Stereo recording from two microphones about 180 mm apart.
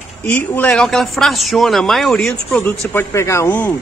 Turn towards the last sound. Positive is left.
turn(degrees=10)  # may be behind; listen again after turning